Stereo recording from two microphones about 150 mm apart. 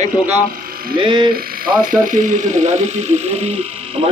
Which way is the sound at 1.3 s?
70° right (ahead or behind).